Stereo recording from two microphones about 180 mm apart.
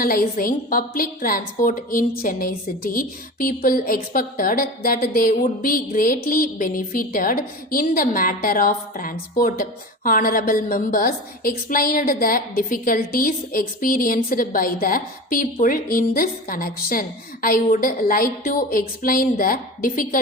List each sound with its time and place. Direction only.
0.0 s a woman's voice: 55° left (ahead or behind)